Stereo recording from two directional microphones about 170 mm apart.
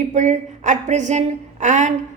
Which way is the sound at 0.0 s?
45° right (ahead or behind).